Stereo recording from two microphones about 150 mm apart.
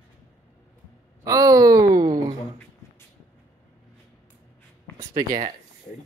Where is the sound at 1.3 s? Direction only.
25° right (ahead or behind).